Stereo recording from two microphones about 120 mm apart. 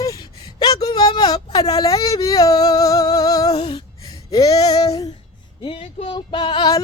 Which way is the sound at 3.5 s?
50° left (ahead or behind).